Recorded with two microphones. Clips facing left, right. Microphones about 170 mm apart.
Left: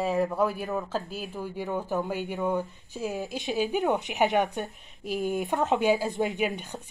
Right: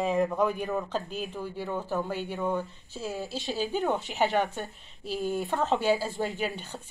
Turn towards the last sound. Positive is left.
turn(degrees=15)  # may be behind; listen again after turning